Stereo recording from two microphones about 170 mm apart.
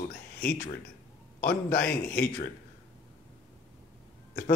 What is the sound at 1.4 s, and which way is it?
Speech, 55° left (ahead or behind).